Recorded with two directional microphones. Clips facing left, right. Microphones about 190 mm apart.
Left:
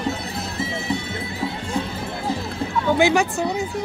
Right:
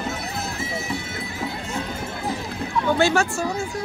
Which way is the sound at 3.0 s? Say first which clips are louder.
Left 3 dB; 15° left (ahead or behind).